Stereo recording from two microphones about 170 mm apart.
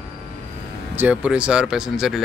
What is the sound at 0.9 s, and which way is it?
Speech, 10° right (ahead or behind).